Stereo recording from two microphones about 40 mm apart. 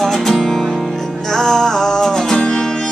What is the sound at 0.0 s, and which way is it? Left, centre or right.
Music, centre.